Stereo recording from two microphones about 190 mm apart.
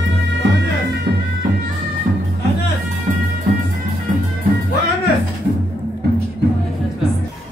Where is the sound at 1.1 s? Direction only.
60° right (ahead or behind).